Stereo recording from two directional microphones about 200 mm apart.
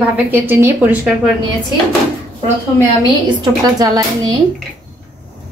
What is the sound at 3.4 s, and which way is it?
Speech, 20° right (ahead or behind).